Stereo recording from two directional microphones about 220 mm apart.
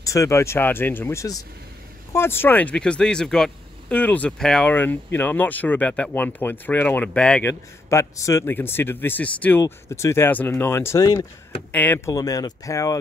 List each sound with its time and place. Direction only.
0.0 s speech: 15° left (ahead or behind)